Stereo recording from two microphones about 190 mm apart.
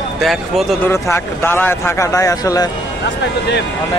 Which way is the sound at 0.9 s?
15° left (ahead or behind).